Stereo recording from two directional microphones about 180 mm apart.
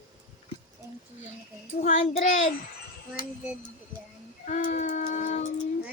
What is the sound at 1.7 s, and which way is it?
Child singing, 40° left (ahead or behind).